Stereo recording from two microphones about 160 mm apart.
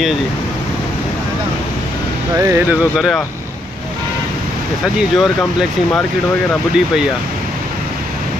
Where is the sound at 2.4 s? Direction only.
15° right (ahead or behind).